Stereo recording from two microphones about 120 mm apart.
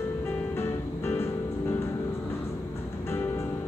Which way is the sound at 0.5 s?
20° left (ahead or behind).